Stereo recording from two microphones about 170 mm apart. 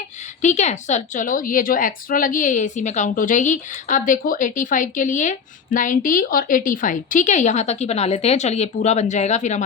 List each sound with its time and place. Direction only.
0.4 s a woman's voice: 45° left (ahead or behind)